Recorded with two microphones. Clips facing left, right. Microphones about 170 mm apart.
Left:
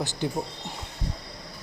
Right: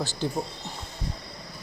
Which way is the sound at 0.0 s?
20° left (ahead or behind).